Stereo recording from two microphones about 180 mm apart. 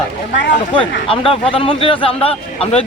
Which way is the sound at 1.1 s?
30° left (ahead or behind).